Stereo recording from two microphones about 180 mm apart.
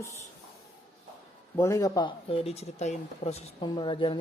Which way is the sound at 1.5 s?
15° left (ahead or behind).